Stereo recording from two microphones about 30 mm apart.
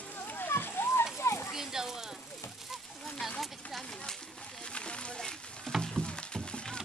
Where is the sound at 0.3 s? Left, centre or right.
Left.